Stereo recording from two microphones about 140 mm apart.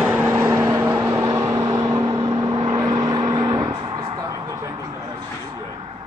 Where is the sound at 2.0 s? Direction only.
35° right (ahead or behind).